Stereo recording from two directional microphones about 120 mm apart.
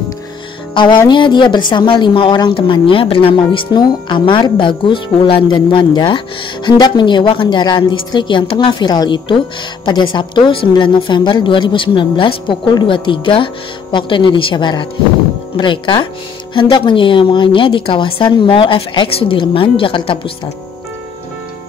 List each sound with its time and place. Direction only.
1.0 s a woman's voice: 40° left (ahead or behind)